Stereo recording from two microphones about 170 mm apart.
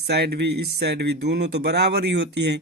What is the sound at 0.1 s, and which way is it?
Speech, 70° right (ahead or behind).